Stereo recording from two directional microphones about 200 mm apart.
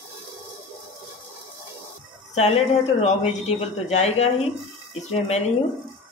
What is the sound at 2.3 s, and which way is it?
Speech, 35° left (ahead or behind).